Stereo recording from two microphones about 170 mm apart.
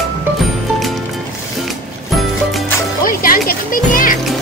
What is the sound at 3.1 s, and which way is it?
Music, 55° left (ahead or behind).